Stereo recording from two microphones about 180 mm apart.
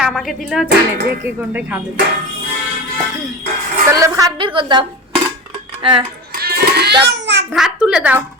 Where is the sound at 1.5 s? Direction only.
10° right (ahead or behind).